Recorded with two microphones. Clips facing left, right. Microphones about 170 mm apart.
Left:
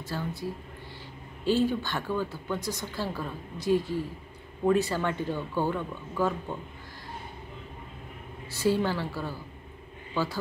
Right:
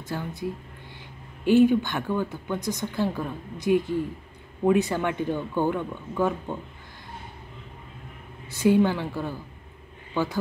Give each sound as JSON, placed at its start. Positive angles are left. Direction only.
{"t": 0.0, "sound": "speech", "side_deg": -20}
{"t": 8.5, "sound": "speech", "side_deg": -20}